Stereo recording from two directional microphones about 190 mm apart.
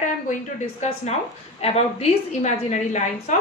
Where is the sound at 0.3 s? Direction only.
35° left (ahead or behind).